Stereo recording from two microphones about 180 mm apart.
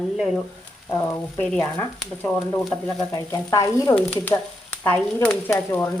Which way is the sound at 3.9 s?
10° left (ahead or behind).